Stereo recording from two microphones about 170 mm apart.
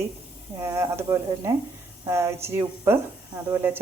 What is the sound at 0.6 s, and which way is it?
Speech, 15° right (ahead or behind).